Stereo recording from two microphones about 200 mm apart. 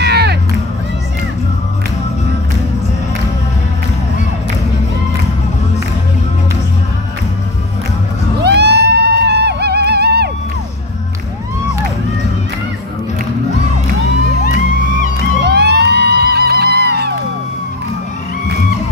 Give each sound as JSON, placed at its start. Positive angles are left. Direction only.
{"t": 0.0, "sound": "music", "side_deg": -55}
{"t": 8.4, "sound": "a sound", "side_deg": -55}
{"t": 9.2, "sound": "music", "side_deg": -55}
{"t": 15.4, "sound": "music", "side_deg": -55}